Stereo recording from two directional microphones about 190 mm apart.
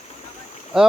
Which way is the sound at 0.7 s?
5° right (ahead or behind).